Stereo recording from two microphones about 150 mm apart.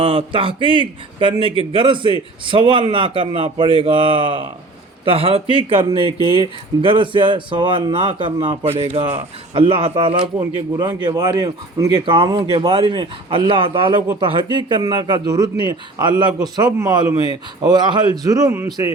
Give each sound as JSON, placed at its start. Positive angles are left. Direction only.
{"t": 0.0, "sound": "speech", "side_deg": -35}
{"t": 6.1, "sound": "speech", "side_deg": 30}
{"t": 6.8, "sound": "speech", "side_deg": -35}
{"t": 11.0, "sound": "a man's voice", "side_deg": -25}